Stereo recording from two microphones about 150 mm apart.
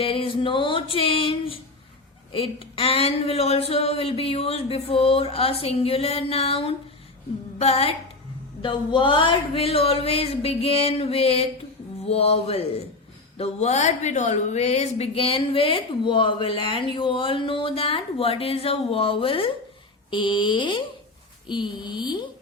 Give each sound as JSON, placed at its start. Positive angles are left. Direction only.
{"t": 0.0, "sound": "a woman's voice", "side_deg": 35}
{"t": 8.6, "sound": "a woman's voice", "side_deg": 30}